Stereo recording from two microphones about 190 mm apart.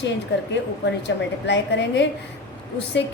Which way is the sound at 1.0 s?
65° left (ahead or behind).